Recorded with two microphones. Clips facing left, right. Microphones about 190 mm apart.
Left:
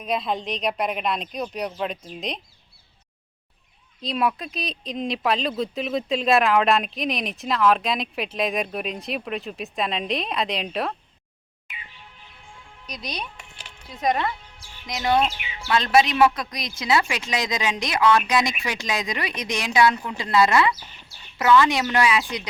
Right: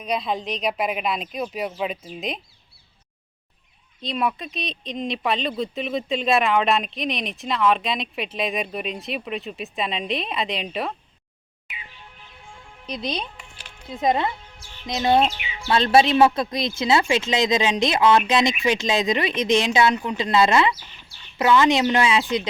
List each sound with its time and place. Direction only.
0.0 s speech: centre (ahead or behind)
4.0 s speech: centre (ahead or behind)
12.8 s speech: 25° right (ahead or behind)